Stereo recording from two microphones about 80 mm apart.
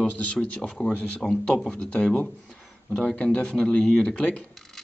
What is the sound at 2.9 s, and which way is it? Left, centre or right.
A man's voice, centre.